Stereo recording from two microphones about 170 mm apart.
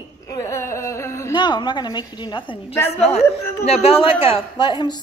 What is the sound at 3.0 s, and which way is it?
A child's voice, 40° left (ahead or behind).